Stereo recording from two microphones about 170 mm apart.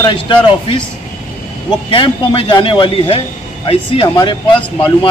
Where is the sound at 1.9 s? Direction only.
30° left (ahead or behind).